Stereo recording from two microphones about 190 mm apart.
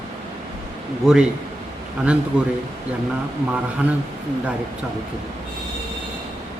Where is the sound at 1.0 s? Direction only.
5° right (ahead or behind).